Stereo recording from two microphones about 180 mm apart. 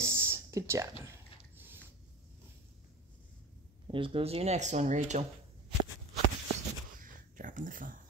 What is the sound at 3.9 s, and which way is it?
Speech, 30° right (ahead or behind).